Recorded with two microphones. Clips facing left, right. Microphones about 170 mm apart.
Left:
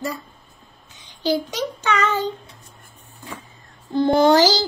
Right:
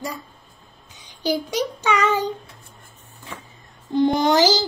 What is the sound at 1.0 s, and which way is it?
Child singing, 10° right (ahead or behind).